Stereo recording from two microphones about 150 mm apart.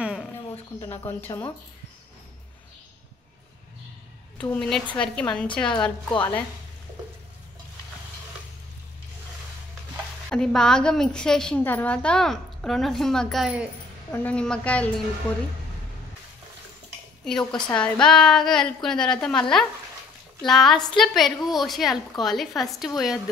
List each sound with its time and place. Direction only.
0.0 s a sound: 5° right (ahead or behind)
0.7 s a woman's voice: 20° left (ahead or behind)
4.4 s a woman's voice: 5° left (ahead or behind)
10.3 s a woman's voice: 5° left (ahead or behind)
14.1 s a woman's voice: 10° left (ahead or behind)
17.2 s a woman's voice: 5° left (ahead or behind)
20.4 s a woman's voice: centre (ahead or behind)